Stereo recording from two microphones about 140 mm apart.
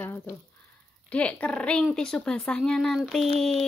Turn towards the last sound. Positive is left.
turn(degrees=0)  # may be behind; listen again after turning